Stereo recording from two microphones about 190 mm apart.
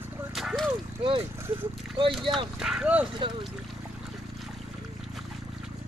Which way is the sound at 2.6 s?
5° right (ahead or behind).